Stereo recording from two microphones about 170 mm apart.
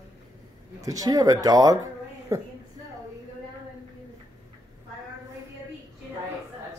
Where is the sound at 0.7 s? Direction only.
20° right (ahead or behind).